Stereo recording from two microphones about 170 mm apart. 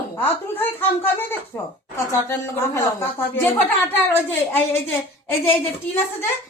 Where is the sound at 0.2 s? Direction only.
10° left (ahead or behind).